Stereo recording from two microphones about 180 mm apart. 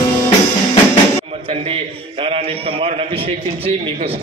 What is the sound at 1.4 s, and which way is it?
A man's voice, 30° right (ahead or behind).